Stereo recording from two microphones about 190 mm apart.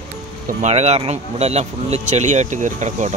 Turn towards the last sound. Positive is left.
turn(degrees=-40)  # may be behind; listen again after turning